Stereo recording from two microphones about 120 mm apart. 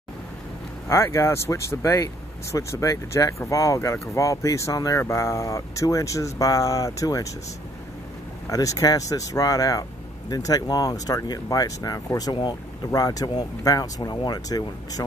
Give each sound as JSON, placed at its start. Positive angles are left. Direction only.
{"t": 0.8, "sound": "speech", "side_deg": 25}
{"t": 8.5, "sound": "speech", "side_deg": 30}